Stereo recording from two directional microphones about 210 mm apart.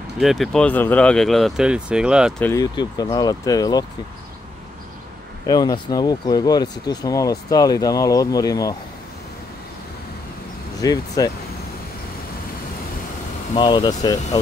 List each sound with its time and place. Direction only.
0.2 s speech: centre (ahead or behind)
2.4 s speech: 15° left (ahead or behind)
5.5 s speech: 20° left (ahead or behind)
10.8 s speech: 15° left (ahead or behind)
13.6 s speech: 20° left (ahead or behind)